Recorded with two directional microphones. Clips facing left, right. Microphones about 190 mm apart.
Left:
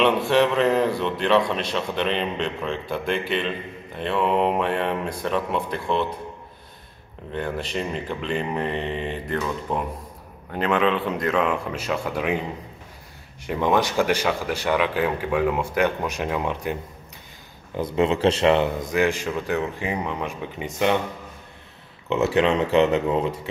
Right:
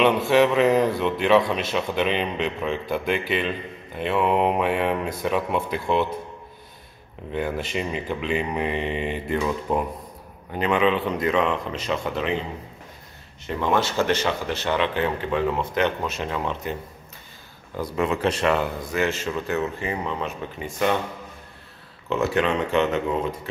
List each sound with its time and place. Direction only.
0.0 s speech: 5° right (ahead or behind)
7.3 s speech: 5° right (ahead or behind)
13.5 s speech: 15° left (ahead or behind)
17.7 s speech: 25° left (ahead or behind)
22.1 s speech: 25° left (ahead or behind)